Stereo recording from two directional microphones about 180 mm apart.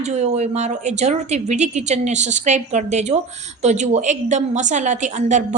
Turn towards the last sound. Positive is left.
turn(degrees=-40)  # may be behind; listen again after turning